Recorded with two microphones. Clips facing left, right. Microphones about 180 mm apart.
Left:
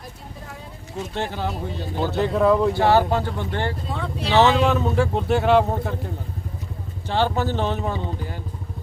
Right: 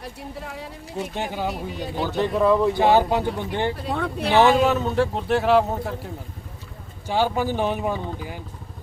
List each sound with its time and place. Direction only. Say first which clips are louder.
0.3 s a sound: right 4 dB; 75° right (ahead or behind)
1.1 s speech: left 2 dB; 10° right (ahead or behind)
2.3 s speech: even; centre (ahead or behind)
2.7 s speech: even; 15° right (ahead or behind)
3.8 s speech: right 3 dB; 55° right (ahead or behind)
4.4 s speech: even; 10° right (ahead or behind)
7.1 s speech: even; 10° right (ahead or behind)